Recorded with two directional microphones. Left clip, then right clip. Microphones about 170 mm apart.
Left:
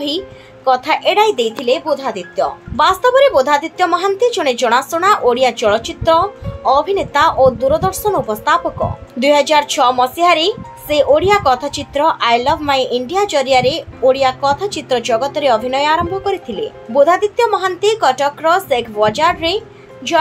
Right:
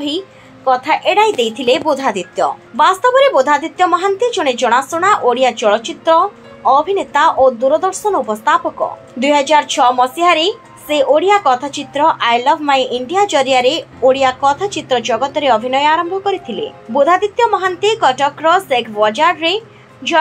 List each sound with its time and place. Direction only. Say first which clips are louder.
0.7 s a woman's voice: even; centre (ahead or behind)
1.6 s speech: right 2 dB; 30° right (ahead or behind)
2.8 s a woman's voice: even; 5° right (ahead or behind)